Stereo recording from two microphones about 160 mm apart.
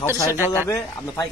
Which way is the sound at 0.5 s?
15° left (ahead or behind).